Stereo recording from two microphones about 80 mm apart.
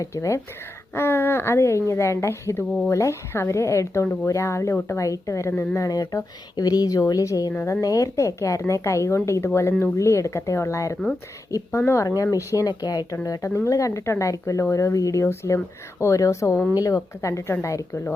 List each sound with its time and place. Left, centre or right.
0.0 s speech: left
4.0 s speech: left
4.3 s speech: left
7.8 s speech: left
12.0 s speech: left